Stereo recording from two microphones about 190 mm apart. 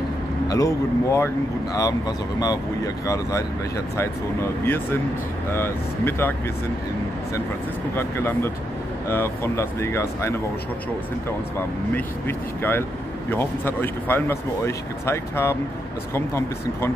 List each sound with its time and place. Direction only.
0.5 s speech: 20° left (ahead or behind)
7.9 s speech: 10° left (ahead or behind)
11.5 s speech: 10° left (ahead or behind)